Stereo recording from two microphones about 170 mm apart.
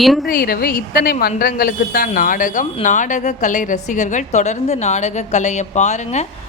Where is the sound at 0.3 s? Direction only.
60° left (ahead or behind).